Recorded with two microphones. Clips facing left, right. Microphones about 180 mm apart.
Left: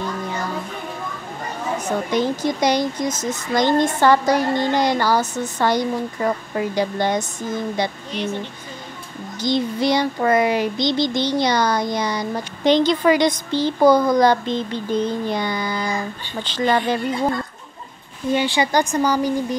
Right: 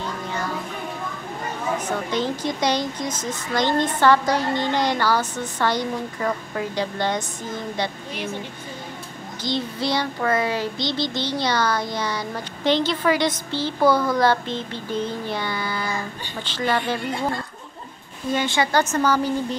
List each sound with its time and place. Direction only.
1.9 s a child's voice: 10° left (ahead or behind)
8.1 s speech: 10° right (ahead or behind)
9.4 s a child's voice: 15° left (ahead or behind)
18.3 s a child's voice: 15° left (ahead or behind)